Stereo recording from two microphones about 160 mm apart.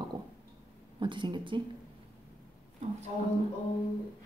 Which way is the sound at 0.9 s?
30° right (ahead or behind).